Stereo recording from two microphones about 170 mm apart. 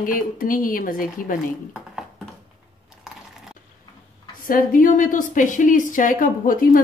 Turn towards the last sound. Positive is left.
turn(degrees=55)  # may be behind; listen again after turning